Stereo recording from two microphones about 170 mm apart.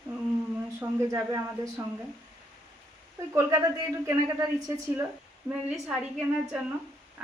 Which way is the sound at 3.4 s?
15° right (ahead or behind).